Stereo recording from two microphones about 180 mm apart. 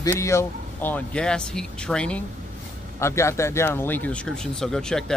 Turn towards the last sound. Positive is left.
turn(degrees=5)  # may be behind; listen again after turning